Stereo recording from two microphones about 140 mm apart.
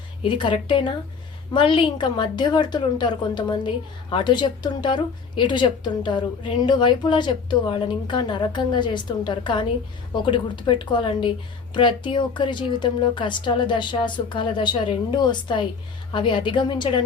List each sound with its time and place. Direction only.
0.2 s a woman's voice: 35° left (ahead or behind)